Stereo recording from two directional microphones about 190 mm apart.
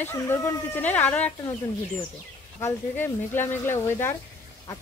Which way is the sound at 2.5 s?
15° left (ahead or behind).